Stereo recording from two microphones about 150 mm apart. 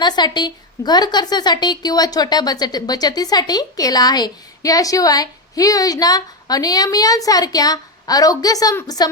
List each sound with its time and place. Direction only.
0.0 s a woman's voice: 30° left (ahead or behind)